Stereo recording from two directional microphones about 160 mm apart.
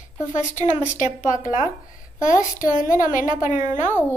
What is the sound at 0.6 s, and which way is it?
A woman's voice, 50° left (ahead or behind).